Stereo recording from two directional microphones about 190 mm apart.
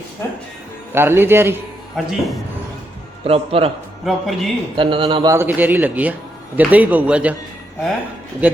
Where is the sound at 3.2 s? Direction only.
30° right (ahead or behind).